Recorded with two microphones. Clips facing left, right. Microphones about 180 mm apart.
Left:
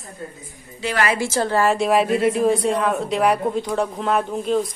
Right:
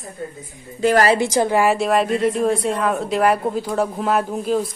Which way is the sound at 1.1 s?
15° right (ahead or behind).